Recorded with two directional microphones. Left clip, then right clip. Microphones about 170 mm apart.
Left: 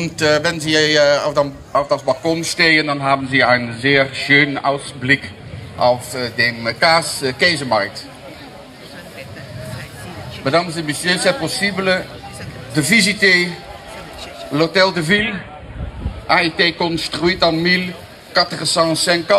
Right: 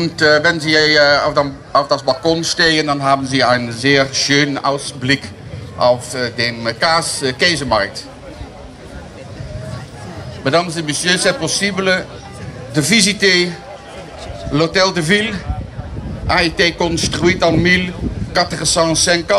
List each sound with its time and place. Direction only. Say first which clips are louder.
0.0 s a man's voice: right 4 dB; 35° left (ahead or behind)
1.9 s a man's voice: right 2 dB; 5° left (ahead or behind)
10.4 s a man's voice: right 2 dB; centre (ahead or behind)
14.5 s a man's voice: even; centre (ahead or behind)